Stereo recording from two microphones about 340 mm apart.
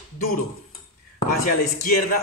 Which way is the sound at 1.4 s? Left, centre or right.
Left.